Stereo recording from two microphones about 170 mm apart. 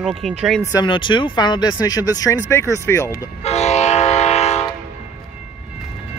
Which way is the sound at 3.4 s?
40° left (ahead or behind).